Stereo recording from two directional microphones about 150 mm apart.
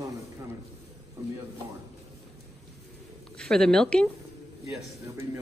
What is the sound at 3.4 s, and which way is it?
Speech, 5° left (ahead or behind).